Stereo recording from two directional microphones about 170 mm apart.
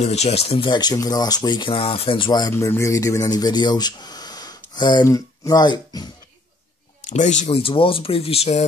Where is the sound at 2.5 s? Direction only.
15° left (ahead or behind).